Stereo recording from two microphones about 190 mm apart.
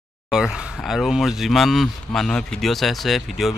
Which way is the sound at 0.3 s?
5° right (ahead or behind).